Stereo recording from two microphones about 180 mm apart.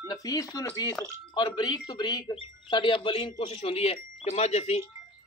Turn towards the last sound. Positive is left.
turn(degrees=35)  # may be behind; listen again after turning